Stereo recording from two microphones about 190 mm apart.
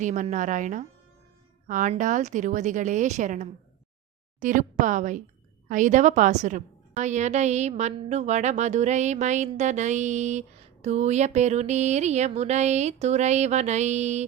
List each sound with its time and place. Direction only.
0.0 s a woman's voice: 40° right (ahead or behind)